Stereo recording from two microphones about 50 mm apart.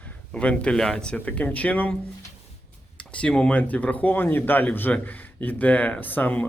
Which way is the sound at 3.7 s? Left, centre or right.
Left.